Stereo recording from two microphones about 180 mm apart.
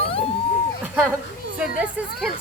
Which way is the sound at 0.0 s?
30° left (ahead or behind).